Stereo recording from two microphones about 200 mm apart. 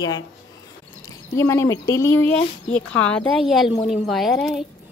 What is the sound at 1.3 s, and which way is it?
A woman's voice, 15° left (ahead or behind).